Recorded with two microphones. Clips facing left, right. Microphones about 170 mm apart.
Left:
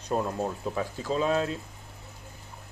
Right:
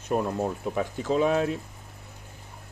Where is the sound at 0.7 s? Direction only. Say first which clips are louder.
Right 4 dB; 15° right (ahead or behind).